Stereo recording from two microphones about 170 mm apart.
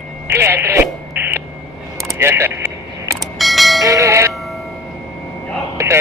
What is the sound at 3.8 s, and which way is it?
Bell, 20° right (ahead or behind).